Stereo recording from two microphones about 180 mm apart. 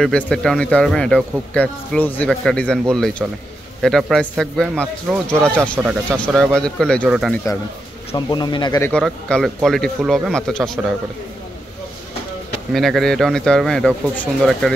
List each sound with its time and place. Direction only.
0.0 s a man's voice: 5° left (ahead or behind)
8.3 s speech: 25° left (ahead or behind)
8.8 s a man's voice: 5° left (ahead or behind)
12.7 s a man's voice: centre (ahead or behind)